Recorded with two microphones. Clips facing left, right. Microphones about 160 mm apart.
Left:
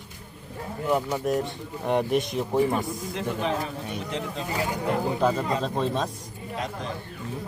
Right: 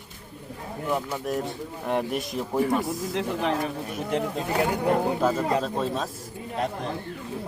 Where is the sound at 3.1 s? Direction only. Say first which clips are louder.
Right 1 dB; 65° right (ahead or behind).